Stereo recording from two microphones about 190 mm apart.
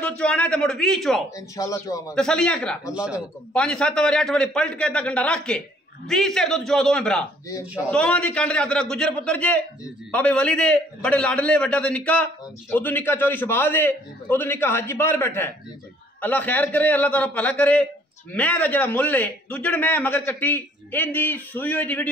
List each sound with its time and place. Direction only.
0.2 s a man's voice: 5° left (ahead or behind)
1.3 s a man's voice: 15° left (ahead or behind)
2.1 s a man's voice: 5° left (ahead or behind)